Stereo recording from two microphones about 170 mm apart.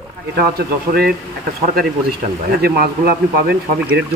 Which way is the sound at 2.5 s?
65° right (ahead or behind).